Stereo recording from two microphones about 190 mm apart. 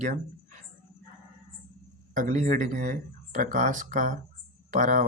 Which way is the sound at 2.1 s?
40° right (ahead or behind).